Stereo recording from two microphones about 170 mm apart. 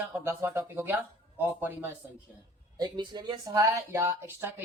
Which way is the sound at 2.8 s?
25° right (ahead or behind).